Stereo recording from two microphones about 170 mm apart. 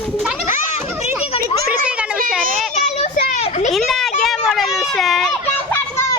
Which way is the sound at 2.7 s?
40° left (ahead or behind).